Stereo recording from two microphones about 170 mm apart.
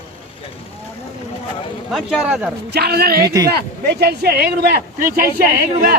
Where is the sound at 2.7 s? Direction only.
70° right (ahead or behind).